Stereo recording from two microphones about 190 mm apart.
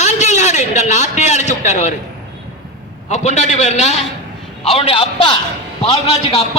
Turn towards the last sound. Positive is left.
turn(degrees=30)  # may be behind; listen again after turning